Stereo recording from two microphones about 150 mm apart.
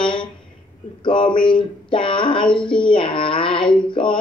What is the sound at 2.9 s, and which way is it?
A woman's voice, 35° left (ahead or behind).